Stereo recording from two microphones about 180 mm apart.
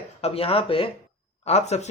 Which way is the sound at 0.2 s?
35° left (ahead or behind).